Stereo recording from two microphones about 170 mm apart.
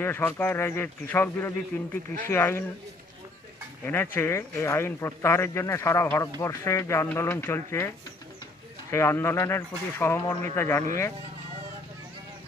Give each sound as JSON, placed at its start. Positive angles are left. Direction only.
{"t": 0.0, "sound": "a man's voice", "side_deg": 10}
{"t": 3.8, "sound": "a man's voice", "side_deg": 10}
{"t": 8.9, "sound": "a man's voice", "side_deg": 15}